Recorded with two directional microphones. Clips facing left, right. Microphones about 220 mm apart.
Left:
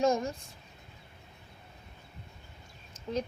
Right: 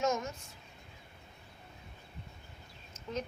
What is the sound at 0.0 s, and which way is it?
Speech, 30° left (ahead or behind).